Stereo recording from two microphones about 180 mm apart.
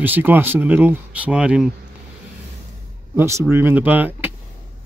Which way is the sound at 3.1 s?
15° right (ahead or behind).